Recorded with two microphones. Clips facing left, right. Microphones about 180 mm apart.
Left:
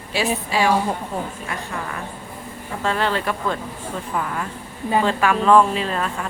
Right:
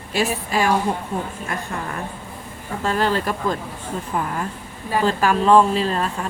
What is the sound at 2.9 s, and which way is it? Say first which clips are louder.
Speech: right 1 dB; 40° right (ahead or behind).